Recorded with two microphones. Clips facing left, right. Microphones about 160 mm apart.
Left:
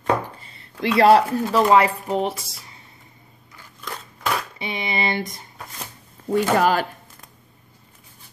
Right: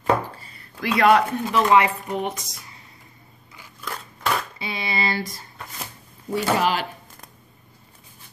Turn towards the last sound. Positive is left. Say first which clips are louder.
# left 3 dB
turn(degrees=45)  # may be behind; listen again after turning